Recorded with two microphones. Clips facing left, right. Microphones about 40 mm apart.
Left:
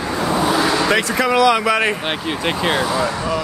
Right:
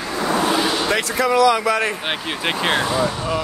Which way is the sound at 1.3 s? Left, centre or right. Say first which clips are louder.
Even; left.